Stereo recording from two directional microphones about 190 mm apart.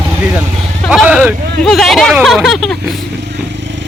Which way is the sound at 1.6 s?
Centre (ahead or behind).